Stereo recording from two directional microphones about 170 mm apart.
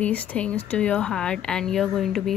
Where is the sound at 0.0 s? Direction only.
10° left (ahead or behind).